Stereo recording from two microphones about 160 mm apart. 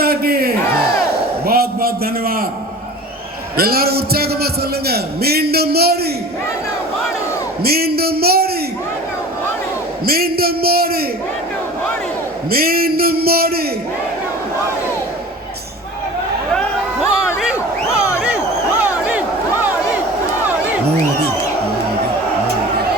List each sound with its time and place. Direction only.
0.0 s crowd: 75° right (ahead or behind)
1.5 s a sound: 70° right (ahead or behind)
3.6 s a man's voice: 75° right (ahead or behind)
7.6 s a man's voice: 75° right (ahead or behind)
10.1 s a man's voice: 70° right (ahead or behind)
12.5 s a man's voice: 70° right (ahead or behind)
17.1 s crowd: 5° right (ahead or behind)